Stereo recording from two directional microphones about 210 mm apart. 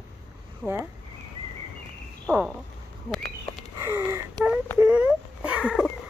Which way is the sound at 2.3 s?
5° right (ahead or behind).